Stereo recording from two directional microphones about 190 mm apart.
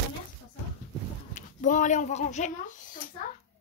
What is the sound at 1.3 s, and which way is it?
Speech, 40° left (ahead or behind).